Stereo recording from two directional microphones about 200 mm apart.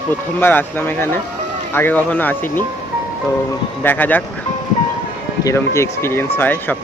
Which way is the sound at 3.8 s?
10° left (ahead or behind).